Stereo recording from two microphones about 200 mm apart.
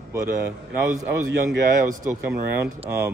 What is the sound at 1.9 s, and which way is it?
Speech, 15° right (ahead or behind).